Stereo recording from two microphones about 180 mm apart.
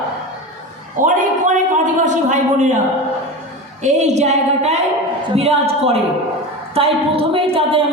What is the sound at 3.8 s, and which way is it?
A woman's voice, 40° right (ahead or behind).